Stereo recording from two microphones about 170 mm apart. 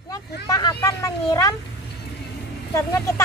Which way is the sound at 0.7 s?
20° left (ahead or behind).